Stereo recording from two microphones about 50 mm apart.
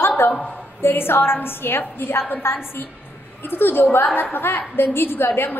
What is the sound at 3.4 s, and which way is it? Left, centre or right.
A woman's voice, left.